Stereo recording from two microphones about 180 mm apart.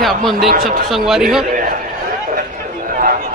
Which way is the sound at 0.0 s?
Centre (ahead or behind).